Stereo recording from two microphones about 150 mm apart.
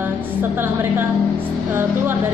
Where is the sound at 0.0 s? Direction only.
15° right (ahead or behind).